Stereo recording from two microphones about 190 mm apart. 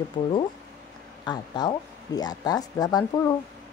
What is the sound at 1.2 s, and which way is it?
Speech, 20° left (ahead or behind).